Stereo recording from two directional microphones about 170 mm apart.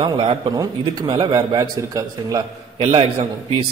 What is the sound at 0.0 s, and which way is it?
Speech, 30° right (ahead or behind).